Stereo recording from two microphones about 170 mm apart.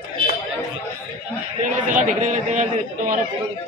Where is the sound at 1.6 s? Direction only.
45° right (ahead or behind).